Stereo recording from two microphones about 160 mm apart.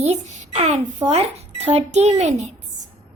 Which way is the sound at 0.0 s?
45° right (ahead or behind).